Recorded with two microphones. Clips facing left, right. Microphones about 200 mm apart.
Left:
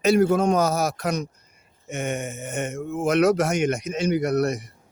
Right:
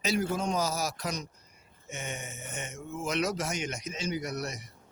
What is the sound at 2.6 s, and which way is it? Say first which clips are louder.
Speech: left 11 dB; 55° left (ahead or behind).